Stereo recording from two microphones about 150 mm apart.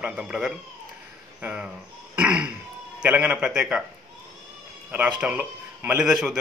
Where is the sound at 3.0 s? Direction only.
10° right (ahead or behind).